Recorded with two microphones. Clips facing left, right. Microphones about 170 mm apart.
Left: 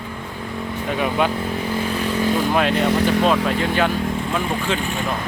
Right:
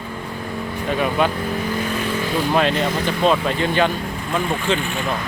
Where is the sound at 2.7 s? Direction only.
65° left (ahead or behind).